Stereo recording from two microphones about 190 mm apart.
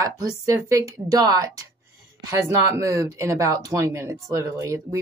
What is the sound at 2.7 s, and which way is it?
Speech, 15° right (ahead or behind).